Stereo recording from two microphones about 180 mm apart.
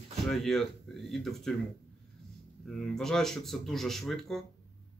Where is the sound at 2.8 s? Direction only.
Centre (ahead or behind).